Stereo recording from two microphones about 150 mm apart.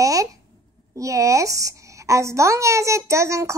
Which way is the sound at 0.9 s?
20° right (ahead or behind).